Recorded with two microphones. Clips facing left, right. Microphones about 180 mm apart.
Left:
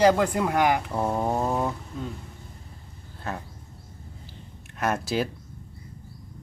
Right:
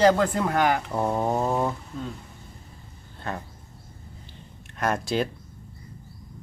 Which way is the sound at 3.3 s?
5° left (ahead or behind).